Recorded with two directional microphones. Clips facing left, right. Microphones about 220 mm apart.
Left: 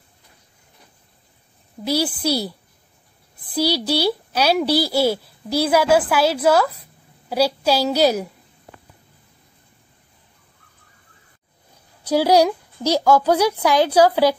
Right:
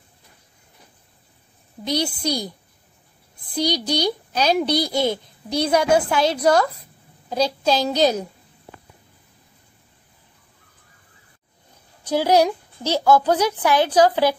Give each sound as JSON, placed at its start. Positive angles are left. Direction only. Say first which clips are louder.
{"t": 1.9, "sound": "a woman's voice", "louder": "left 3 dB", "side_deg": 5}
{"t": 3.5, "sound": "a child's voice", "louder": "left 2 dB", "side_deg": 5}
{"t": 12.0, "sound": "a woman's voice", "louder": "left 2 dB", "side_deg": 10}